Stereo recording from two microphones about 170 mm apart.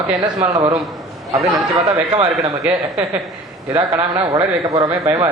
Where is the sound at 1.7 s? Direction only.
20° right (ahead or behind).